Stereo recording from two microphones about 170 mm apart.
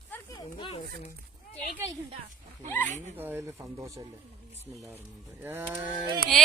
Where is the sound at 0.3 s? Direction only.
30° left (ahead or behind).